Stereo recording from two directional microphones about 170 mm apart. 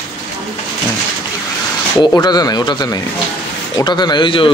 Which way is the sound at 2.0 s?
25° left (ahead or behind).